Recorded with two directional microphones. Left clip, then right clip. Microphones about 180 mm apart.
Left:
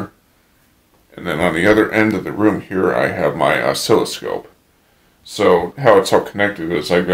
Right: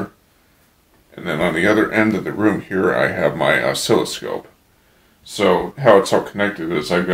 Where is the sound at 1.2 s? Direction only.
45° left (ahead or behind).